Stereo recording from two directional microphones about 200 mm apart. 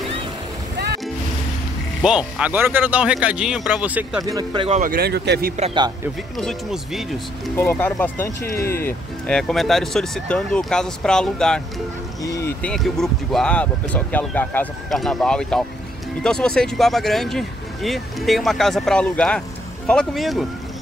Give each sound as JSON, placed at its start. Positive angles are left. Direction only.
{"t": 2.0, "sound": "speech", "side_deg": -5}
{"t": 4.2, "sound": "speech", "side_deg": -20}
{"t": 4.6, "sound": "speech", "side_deg": -35}
{"t": 4.9, "sound": "speech", "side_deg": -55}
{"t": 6.3, "sound": "speech", "side_deg": 0}
{"t": 7.5, "sound": "speech", "side_deg": 10}
{"t": 12.2, "sound": "boat", "side_deg": 15}
{"t": 12.7, "sound": "speech", "side_deg": 0}